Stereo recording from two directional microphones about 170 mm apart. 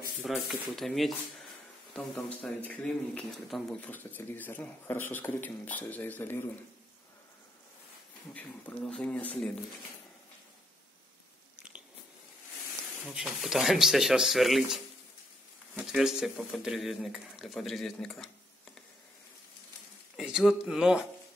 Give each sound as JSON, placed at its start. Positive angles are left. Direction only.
{"t": 0.2, "sound": "speech", "side_deg": 0}
{"t": 2.1, "sound": "speech", "side_deg": 10}
{"t": 8.3, "sound": "speech", "side_deg": 5}
{"t": 13.0, "sound": "speech", "side_deg": -5}
{"t": 15.8, "sound": "speech", "side_deg": -5}
{"t": 20.2, "sound": "speech", "side_deg": -5}